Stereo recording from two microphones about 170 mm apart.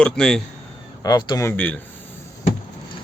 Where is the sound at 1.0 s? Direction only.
25° left (ahead or behind).